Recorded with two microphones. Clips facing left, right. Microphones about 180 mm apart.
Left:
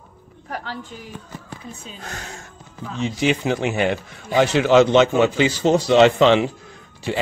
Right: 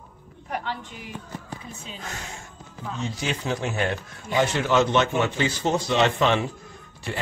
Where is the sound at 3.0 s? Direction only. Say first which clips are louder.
Left 9 dB; 70° left (ahead or behind).